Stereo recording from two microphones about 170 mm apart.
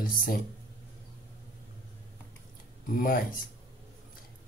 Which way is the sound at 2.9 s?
55° left (ahead or behind).